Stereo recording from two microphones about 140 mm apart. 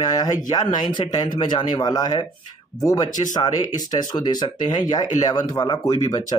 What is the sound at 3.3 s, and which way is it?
Speech, 25° left (ahead or behind).